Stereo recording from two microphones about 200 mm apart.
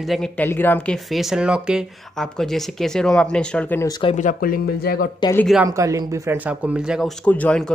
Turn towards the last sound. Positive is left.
turn(degrees=5)  # may be behind; listen again after turning